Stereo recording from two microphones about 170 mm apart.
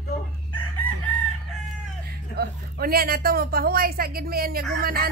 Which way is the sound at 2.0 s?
65° right (ahead or behind).